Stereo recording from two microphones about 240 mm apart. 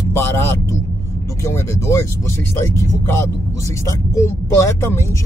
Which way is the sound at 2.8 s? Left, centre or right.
Centre.